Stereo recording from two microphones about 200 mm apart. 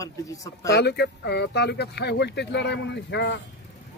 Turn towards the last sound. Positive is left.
turn(degrees=60)  # may be behind; listen again after turning